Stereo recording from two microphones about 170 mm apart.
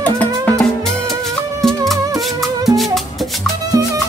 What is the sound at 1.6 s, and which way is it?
Music, centre (ahead or behind).